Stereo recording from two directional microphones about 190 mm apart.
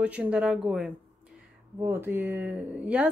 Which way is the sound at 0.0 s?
5° right (ahead or behind).